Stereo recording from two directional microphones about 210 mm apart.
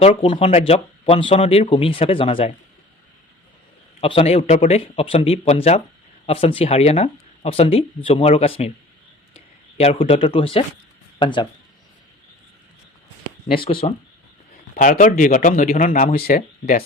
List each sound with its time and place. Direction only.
0.0 s speech: 25° left (ahead or behind)
4.0 s speech: 30° left (ahead or behind)
9.7 s speech: 25° left (ahead or behind)
13.8 s speech: 30° left (ahead or behind)
14.8 s speech: 40° left (ahead or behind)